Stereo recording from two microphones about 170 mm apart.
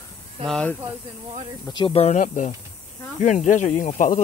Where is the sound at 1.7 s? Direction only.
30° left (ahead or behind); by 4.2 s 45° left (ahead or behind).